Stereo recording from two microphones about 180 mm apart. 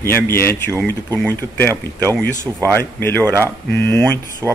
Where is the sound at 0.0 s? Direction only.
15° left (ahead or behind).